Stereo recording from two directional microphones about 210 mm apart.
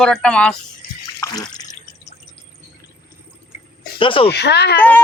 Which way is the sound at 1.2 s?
20° left (ahead or behind).